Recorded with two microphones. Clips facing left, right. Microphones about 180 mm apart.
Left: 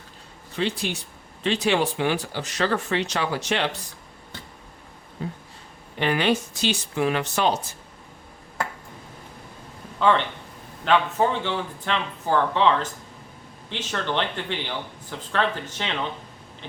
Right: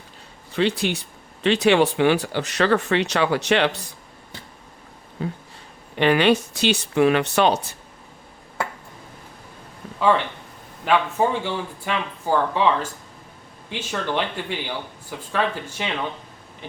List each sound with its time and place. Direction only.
0.5 s speech: 70° right (ahead or behind)
5.2 s speech: 80° right
10.8 s speech: 10° right (ahead or behind)